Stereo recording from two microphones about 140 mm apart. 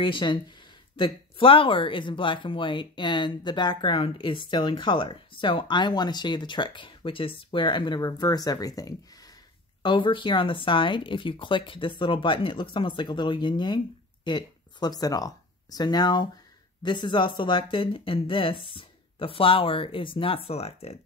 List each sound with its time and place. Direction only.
0.0 s speech: 35° left (ahead or behind)